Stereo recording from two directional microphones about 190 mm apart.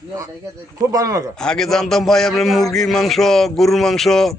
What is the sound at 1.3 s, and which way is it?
A man's voice, 5° left (ahead or behind).